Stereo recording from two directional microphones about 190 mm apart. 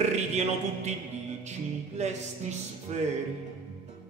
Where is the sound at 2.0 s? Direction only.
35° right (ahead or behind).